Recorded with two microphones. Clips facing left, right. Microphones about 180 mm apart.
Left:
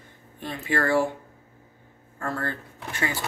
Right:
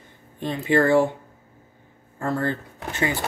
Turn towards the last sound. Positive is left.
turn(degrees=-20)  # may be behind; listen again after turning